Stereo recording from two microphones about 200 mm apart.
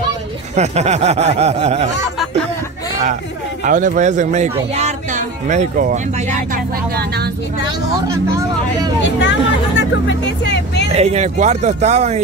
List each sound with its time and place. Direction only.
0.6 s speech: 35° right (ahead or behind)
3.6 s speech: 40° right (ahead or behind)
9.0 s speech: 60° left (ahead or behind)
10.9 s speech: 30° right (ahead or behind)